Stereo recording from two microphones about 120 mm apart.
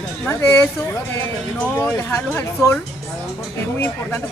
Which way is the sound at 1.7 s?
20° left (ahead or behind).